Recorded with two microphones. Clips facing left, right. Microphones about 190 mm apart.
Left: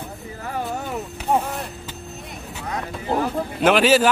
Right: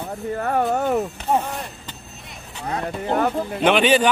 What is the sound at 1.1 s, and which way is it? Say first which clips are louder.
Speech: even; 10° left (ahead or behind).